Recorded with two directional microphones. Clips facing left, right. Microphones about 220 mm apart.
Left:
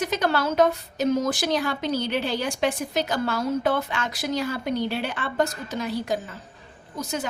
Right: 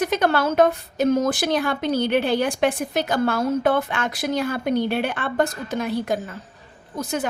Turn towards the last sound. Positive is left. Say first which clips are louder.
# right 4 dB
turn(degrees=-55)  # may be behind; listen again after turning